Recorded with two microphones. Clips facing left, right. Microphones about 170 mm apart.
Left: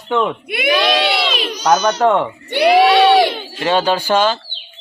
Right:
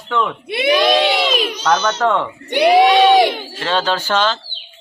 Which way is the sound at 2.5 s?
15° right (ahead or behind).